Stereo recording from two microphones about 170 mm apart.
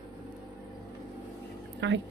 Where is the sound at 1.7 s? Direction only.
90° right.